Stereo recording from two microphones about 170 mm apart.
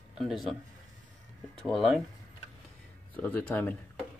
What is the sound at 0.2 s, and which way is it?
Speech, centre (ahead or behind).